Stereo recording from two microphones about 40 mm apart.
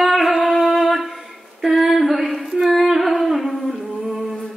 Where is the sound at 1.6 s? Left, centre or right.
Centre.